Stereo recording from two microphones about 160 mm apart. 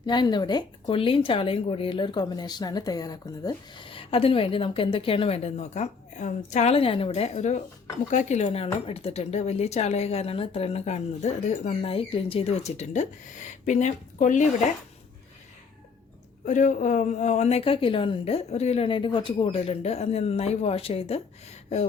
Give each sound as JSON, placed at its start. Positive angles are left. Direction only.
{"t": 0.0, "sound": "speech", "side_deg": 25}
{"t": 16.5, "sound": "speech", "side_deg": 50}